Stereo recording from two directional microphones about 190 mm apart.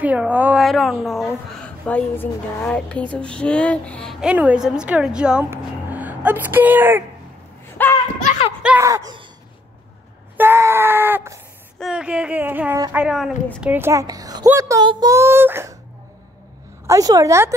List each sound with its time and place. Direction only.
0.0 s a woman's voice: 10° right (ahead or behind)
7.7 s a sound: 10° left (ahead or behind)
8.6 s speech: 15° right (ahead or behind)
10.3 s screaming: 10° right (ahead or behind)
11.8 s a woman's voice: 5° right (ahead or behind)
16.8 s a woman's voice: 15° right (ahead or behind)